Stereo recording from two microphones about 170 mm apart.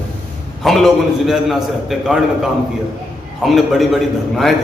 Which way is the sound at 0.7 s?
Centre (ahead or behind).